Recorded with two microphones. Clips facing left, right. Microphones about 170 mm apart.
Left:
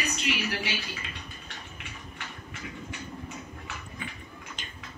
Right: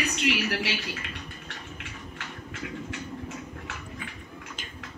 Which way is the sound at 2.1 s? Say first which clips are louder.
Right 3 dB; 85° right.